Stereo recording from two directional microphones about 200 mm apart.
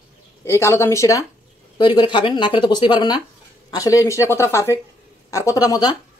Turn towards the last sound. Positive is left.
turn(degrees=20)  # may be behind; listen again after turning